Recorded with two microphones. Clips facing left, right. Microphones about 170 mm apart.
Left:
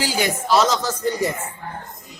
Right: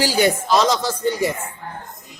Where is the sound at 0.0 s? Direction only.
35° right (ahead or behind).